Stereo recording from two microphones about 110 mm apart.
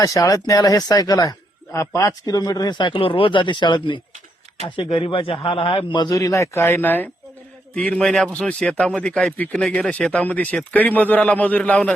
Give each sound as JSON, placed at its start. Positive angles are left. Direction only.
{"t": 0.0, "sound": "a man's voice", "side_deg": 30}